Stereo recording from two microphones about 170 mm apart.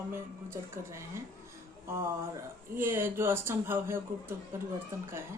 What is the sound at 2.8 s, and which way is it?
Speech, 15° right (ahead or behind).